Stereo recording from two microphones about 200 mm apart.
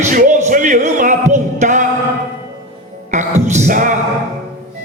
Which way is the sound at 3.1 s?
35° right (ahead or behind).